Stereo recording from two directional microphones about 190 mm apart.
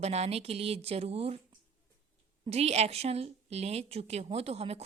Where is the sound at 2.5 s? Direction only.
35° right (ahead or behind).